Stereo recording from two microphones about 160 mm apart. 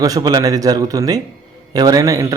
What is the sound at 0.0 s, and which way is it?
A man's voice, 25° right (ahead or behind).